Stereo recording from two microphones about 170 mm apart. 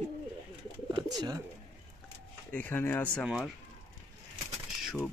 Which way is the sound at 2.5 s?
10° left (ahead or behind).